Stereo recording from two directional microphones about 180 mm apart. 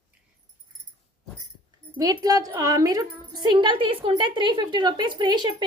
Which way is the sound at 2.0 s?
20° right (ahead or behind).